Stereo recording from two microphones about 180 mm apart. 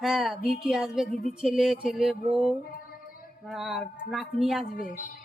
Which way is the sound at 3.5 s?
Centre (ahead or behind).